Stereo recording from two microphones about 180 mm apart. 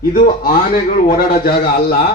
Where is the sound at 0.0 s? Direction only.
50° left (ahead or behind).